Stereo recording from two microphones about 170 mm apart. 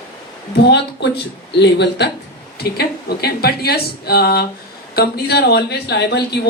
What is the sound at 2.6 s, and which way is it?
Speech, 70° left (ahead or behind).